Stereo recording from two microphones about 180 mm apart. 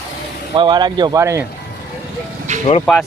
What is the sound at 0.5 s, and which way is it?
Speech, 25° right (ahead or behind).